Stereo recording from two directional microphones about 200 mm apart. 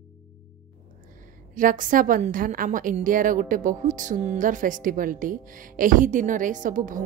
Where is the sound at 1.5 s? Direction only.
40° right (ahead or behind).